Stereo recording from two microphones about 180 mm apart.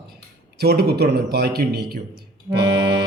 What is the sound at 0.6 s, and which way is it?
Speech, 65° right (ahead or behind).